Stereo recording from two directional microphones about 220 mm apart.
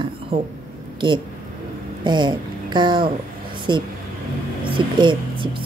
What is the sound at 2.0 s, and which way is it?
Speech, 20° right (ahead or behind).